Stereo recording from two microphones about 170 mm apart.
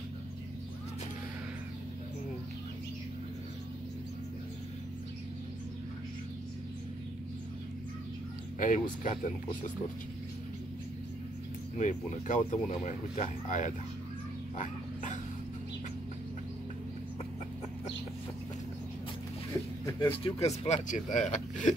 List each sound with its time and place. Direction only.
8.5 s speech: 50° left (ahead or behind)
11.8 s speech: 45° left (ahead or behind)
19.8 s speech: 20° left (ahead or behind)
20.2 s speech: 40° left (ahead or behind)